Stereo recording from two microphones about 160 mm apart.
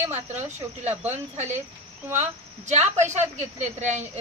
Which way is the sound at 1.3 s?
45° right (ahead or behind).